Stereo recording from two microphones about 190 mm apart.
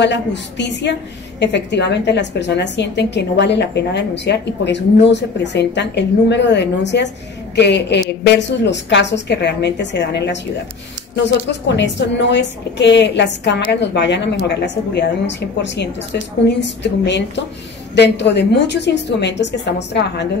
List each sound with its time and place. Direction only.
0.0 s a woman's voice: 65° left (ahead or behind)
11.6 s a woman's voice: 65° left (ahead or behind)